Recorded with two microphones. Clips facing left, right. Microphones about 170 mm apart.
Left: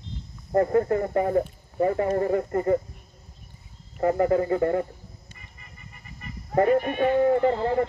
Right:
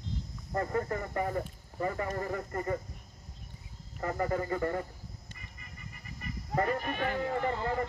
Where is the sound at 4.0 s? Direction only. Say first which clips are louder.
Left 10 dB; 45° left (ahead or behind).